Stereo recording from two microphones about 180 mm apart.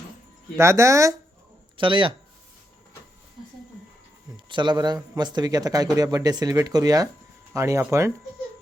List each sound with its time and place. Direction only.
0.5 s speech: 15° right (ahead or behind)
1.7 s speech: 30° right (ahead or behind)
4.4 s speech: 25° right (ahead or behind)